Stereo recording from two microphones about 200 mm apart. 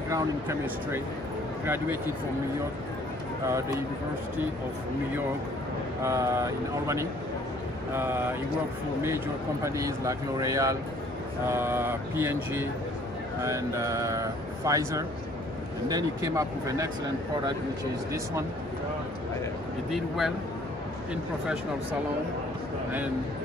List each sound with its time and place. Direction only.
0.1 s speech: 15° right (ahead or behind)
3.4 s speech: 15° right (ahead or behind)
6.0 s speech: 15° right (ahead or behind)
19.9 s speech: centre (ahead or behind)